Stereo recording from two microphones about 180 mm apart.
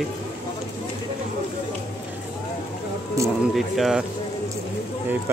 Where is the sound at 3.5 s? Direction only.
Centre (ahead or behind).